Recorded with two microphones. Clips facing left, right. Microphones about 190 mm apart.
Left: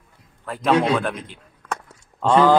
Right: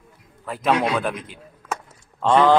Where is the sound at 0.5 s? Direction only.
Centre (ahead or behind).